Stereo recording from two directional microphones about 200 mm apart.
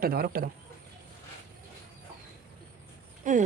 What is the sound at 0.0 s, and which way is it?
Speech, 50° right (ahead or behind).